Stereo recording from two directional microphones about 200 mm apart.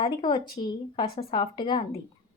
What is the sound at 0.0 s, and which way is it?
A woman's voice, 25° left (ahead or behind).